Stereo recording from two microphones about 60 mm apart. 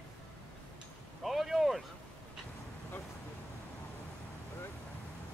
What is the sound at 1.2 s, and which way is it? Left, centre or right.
Speech, centre.